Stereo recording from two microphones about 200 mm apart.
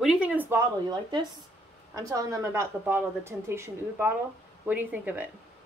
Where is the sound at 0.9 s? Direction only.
20° right (ahead or behind).